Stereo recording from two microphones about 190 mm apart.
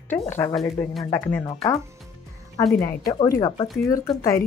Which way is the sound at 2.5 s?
15° left (ahead or behind).